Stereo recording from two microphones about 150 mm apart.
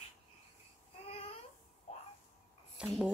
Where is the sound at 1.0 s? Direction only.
40° left (ahead or behind).